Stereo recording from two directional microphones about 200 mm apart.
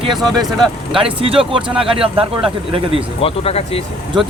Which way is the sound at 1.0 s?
25° right (ahead or behind).